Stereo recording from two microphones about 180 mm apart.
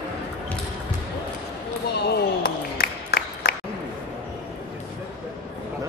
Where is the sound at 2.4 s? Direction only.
60° left (ahead or behind).